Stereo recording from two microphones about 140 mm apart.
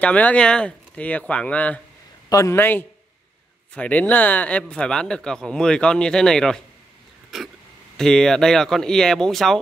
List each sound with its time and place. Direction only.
0.0 s speech: 10° left (ahead or behind)
2.2 s speech: 20° left (ahead or behind); by 9.6 s 5° left (ahead or behind)